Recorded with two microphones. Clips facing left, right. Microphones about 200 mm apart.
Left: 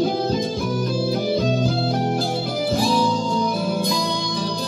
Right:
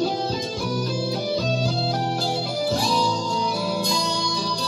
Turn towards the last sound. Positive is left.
turn(degrees=55)  # may be behind; listen again after turning